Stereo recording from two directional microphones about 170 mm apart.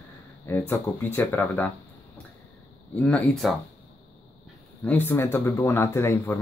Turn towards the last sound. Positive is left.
turn(degrees=15)  # may be behind; listen again after turning